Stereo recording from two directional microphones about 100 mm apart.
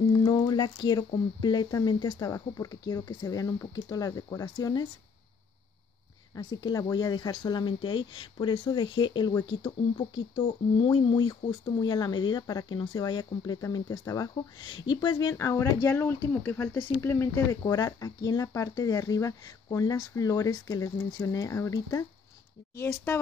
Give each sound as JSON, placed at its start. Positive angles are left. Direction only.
{"t": 0.1, "sound": "speech", "side_deg": 45}
{"t": 2.2, "sound": "speech", "side_deg": 35}
{"t": 6.3, "sound": "speech", "side_deg": 40}
{"t": 14.3, "sound": "speech", "side_deg": 50}
{"t": 15.3, "sound": "speech", "side_deg": 30}
{"t": 17.6, "sound": "speech", "side_deg": 35}